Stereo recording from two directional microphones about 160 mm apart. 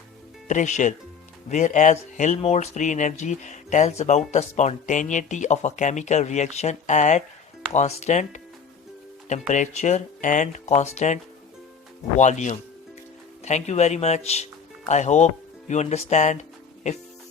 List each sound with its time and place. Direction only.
0.4 s speech: 50° left (ahead or behind)
9.5 s speech: 50° left (ahead or behind)